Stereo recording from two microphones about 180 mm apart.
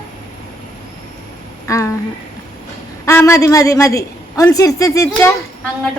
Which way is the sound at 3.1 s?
15° left (ahead or behind).